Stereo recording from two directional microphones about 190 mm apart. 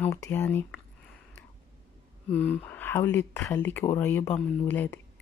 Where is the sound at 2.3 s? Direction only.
10° left (ahead or behind).